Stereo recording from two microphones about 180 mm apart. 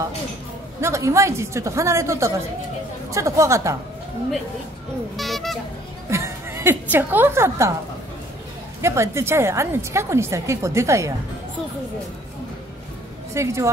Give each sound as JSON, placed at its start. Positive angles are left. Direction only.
{"t": 0.7, "sound": "a woman's voice", "side_deg": -15}
{"t": 5.1, "sound": "speech", "side_deg": 0}
{"t": 6.0, "sound": "a woman's voice", "side_deg": -15}
{"t": 8.8, "sound": "a woman's voice", "side_deg": -15}
{"t": 13.3, "sound": "a woman's voice", "side_deg": -15}